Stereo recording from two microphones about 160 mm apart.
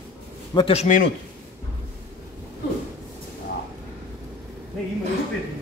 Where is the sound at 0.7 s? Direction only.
50° left (ahead or behind).